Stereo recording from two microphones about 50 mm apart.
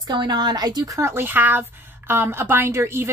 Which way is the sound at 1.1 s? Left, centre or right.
Right.